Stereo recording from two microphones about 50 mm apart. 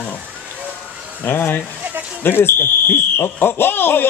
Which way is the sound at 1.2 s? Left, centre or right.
Left.